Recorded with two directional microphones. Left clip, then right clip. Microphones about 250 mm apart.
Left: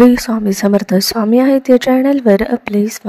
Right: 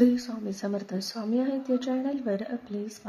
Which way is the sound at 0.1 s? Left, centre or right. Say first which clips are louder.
Left 17 dB; left.